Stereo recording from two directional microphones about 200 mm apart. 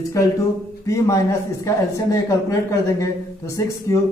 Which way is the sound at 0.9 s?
15° left (ahead or behind).